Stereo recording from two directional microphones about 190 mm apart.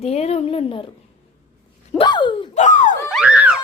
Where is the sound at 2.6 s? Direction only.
40° left (ahead or behind).